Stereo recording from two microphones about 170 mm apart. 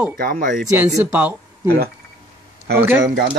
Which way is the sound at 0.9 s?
10° right (ahead or behind).